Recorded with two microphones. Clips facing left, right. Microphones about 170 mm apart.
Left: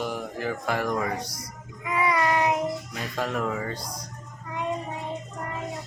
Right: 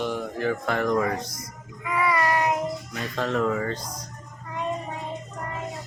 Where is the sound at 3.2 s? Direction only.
10° left (ahead or behind).